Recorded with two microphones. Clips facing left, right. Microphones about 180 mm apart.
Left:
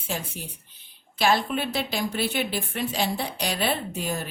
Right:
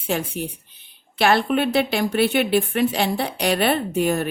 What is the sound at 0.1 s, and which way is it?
Speech, 65° right (ahead or behind).